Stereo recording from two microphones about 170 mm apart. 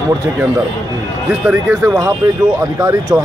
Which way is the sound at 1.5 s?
15° right (ahead or behind).